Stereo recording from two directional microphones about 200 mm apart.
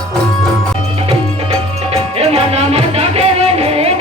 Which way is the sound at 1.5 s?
30° right (ahead or behind).